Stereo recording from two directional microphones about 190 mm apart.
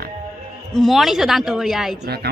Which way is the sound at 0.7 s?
Centre (ahead or behind).